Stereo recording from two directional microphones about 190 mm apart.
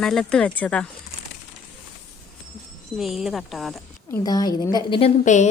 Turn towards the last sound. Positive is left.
turn(degrees=40)  # may be behind; listen again after turning